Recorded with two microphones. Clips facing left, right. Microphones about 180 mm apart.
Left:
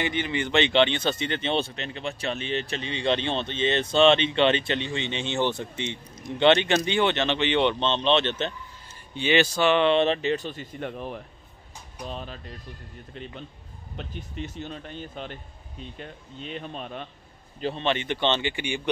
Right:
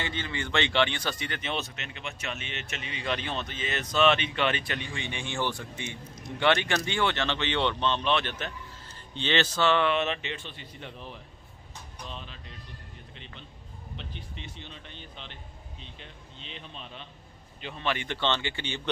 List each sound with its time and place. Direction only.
0.0 s speech: 15° left (ahead or behind)
9.1 s speech: 10° left (ahead or behind); by 11.2 s 55° left (ahead or behind)
12.1 s speech: 45° left (ahead or behind)
17.7 s speech: 25° left (ahead or behind)